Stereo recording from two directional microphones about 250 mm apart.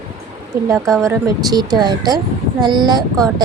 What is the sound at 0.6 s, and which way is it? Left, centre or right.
Speech, centre.